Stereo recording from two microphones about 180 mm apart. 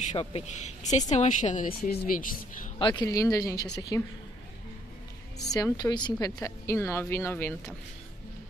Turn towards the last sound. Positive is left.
turn(degrees=15)  # may be behind; listen again after turning